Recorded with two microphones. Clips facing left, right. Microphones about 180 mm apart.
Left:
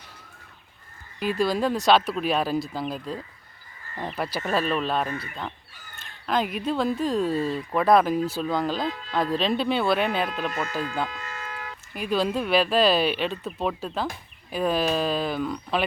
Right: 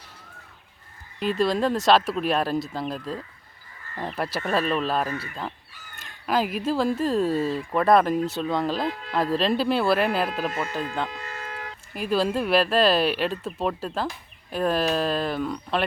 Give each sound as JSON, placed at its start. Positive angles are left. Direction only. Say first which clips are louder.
{"t": 1.2, "sound": "speech", "louder": "right 1 dB", "side_deg": 0}
{"t": 11.3, "sound": "a sound", "louder": "right 1 dB", "side_deg": -55}
{"t": 11.9, "sound": "speech", "louder": "right 1 dB", "side_deg": 0}